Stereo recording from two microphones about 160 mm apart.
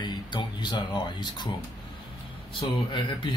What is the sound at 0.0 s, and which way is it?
Speech, 30° left (ahead or behind).